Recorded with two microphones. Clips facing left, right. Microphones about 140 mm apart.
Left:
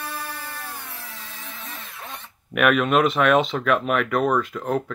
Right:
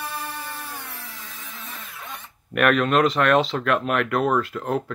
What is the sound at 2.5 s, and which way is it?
Speech, 5° left (ahead or behind).